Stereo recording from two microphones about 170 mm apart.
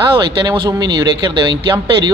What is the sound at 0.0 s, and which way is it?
Speech, 30° right (ahead or behind).